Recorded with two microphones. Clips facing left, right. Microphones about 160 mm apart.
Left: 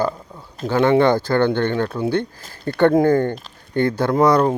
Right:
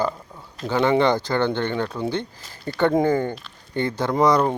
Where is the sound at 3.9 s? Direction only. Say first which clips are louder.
Left 2 dB; 10° left (ahead or behind).